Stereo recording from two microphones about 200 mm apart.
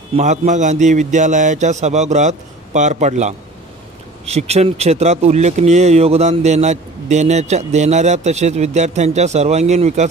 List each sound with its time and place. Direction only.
0.1 s speech: 35° right (ahead or behind)